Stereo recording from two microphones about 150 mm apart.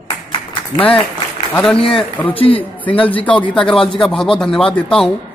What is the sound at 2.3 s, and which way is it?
Speech, 35° left (ahead or behind).